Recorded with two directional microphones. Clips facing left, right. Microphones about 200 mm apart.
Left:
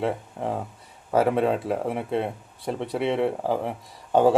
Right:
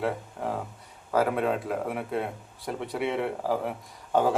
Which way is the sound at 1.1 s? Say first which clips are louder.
Left 4 dB; 30° left (ahead or behind).